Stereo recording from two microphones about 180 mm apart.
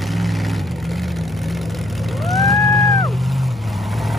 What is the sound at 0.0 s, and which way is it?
Vehicle, centre (ahead or behind).